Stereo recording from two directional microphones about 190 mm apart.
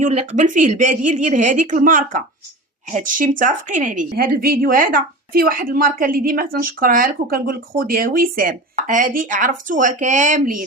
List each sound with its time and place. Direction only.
0.0 s a woman's voice: 35° right (ahead or behind)